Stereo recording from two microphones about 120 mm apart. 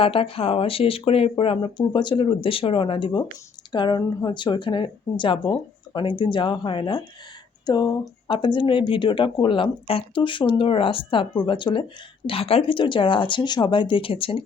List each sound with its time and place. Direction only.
0.0 s speech: 50° left (ahead or behind)